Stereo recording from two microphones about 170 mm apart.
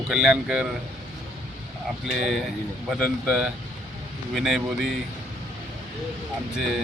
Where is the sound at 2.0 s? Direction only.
Centre (ahead or behind).